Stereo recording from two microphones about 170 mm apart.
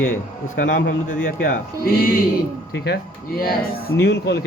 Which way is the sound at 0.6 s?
55° left (ahead or behind).